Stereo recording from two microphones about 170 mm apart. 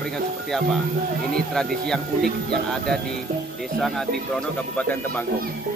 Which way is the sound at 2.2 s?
65° right (ahead or behind).